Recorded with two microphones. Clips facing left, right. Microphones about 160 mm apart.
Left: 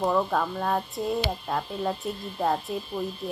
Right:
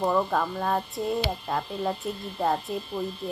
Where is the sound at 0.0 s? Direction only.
Centre (ahead or behind).